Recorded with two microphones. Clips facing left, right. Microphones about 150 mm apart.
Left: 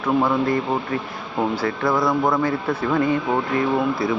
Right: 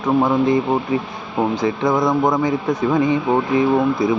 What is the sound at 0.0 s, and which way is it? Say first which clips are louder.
Speech: right 3 dB; 15° right (ahead or behind).